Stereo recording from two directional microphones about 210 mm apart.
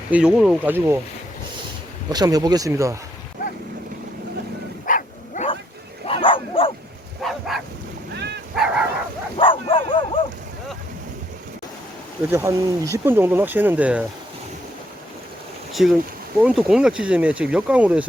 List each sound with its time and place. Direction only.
0.1 s speech: 5° right (ahead or behind)
2.0 s speech: 20° right (ahead or behind)
4.9 s bow-wow: 40° left (ahead or behind)
6.1 s dog: 25° left (ahead or behind)
7.3 s bow-wow: centre (ahead or behind)
8.1 s dog: 50° right (ahead or behind)
8.5 s bow-wow: 5° right (ahead or behind)
9.4 s bow-wow: 25° left (ahead or behind)
12.3 s speech: 15° right (ahead or behind)
15.7 s speech: centre (ahead or behind)